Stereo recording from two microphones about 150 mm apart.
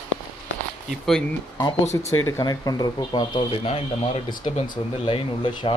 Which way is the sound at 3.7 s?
40° left (ahead or behind).